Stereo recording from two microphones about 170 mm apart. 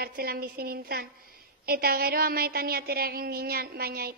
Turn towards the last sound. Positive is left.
turn(degrees=-65)  # may be behind; listen again after turning